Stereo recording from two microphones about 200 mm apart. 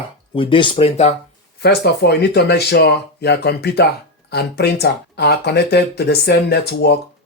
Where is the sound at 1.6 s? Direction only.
55° left (ahead or behind).